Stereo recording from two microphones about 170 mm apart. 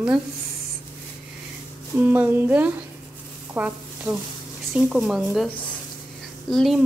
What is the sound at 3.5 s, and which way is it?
Frying, 5° right (ahead or behind).